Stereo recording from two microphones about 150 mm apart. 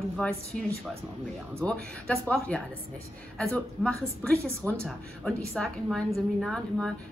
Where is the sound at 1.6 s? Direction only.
5° left (ahead or behind).